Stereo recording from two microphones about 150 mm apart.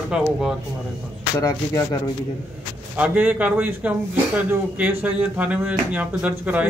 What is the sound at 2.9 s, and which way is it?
Speech, 10° right (ahead or behind).